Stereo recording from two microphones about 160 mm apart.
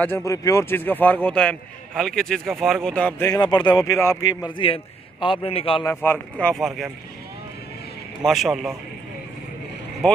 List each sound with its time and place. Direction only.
0.0 s a man's voice: 15° left (ahead or behind)
3.3 s speech: 30° left (ahead or behind)
4.6 s a man's voice: 35° left (ahead or behind)
6.0 s speech: 5° left (ahead or behind)
8.3 s speech: centre (ahead or behind)
10.0 s speech: 5° left (ahead or behind)